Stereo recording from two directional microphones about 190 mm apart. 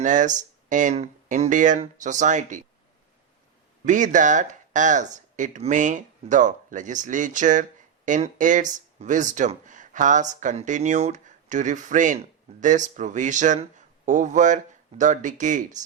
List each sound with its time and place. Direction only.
0.0 s speech: 40° right (ahead or behind)
3.8 s speech: 40° right (ahead or behind)